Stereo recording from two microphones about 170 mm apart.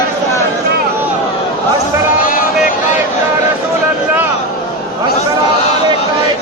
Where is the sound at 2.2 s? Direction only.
55° left (ahead or behind).